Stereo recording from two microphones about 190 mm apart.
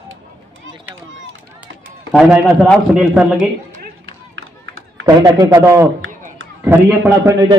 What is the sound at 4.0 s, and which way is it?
Run, 90° right.